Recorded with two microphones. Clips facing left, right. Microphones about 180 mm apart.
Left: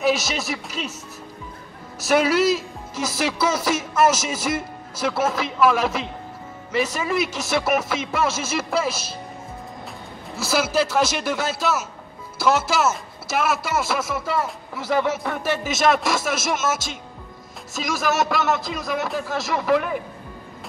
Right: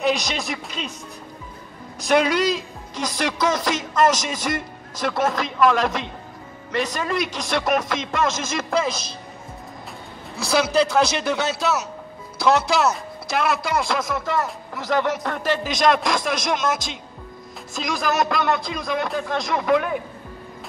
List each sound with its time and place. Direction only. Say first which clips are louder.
0.0 s a man's voice: left 1 dB; 5° left (ahead or behind)
2.0 s a man's voice: even; 5° left (ahead or behind)
10.3 s a man's voice: right 2 dB; 5° left (ahead or behind)